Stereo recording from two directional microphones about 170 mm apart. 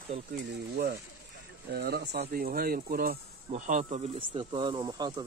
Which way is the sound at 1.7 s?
70° right (ahead or behind).